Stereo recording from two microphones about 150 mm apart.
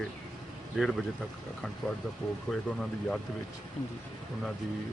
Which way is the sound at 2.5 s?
5° left (ahead or behind).